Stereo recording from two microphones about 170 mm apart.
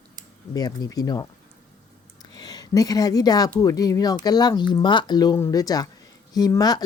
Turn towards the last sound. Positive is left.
turn(degrees=20)  # may be behind; listen again after turning